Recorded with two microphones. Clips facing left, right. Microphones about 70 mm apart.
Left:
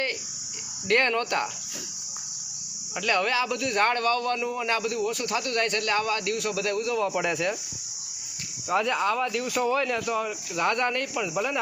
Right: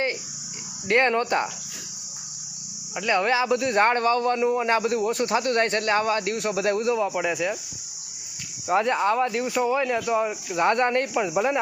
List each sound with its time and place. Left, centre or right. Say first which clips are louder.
0.9 s a man's voice: right 3 dB; right
2.9 s a man's voice: right 3 dB; centre
7.0 s speech: right 1 dB; centre
8.6 s a man's voice: right 3 dB; right